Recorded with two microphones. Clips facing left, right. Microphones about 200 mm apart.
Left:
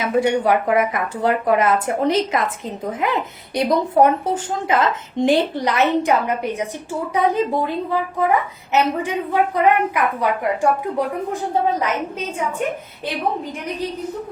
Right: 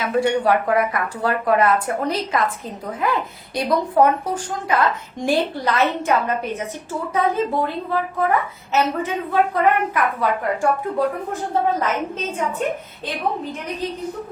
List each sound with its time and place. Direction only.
0.0 s a woman's voice: 20° left (ahead or behind)